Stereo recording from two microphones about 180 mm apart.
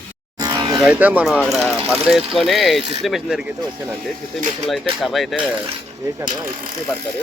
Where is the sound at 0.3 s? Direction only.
20° right (ahead or behind).